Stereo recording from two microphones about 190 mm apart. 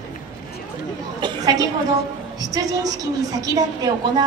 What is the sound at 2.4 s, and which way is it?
A woman's voice, 20° right (ahead or behind).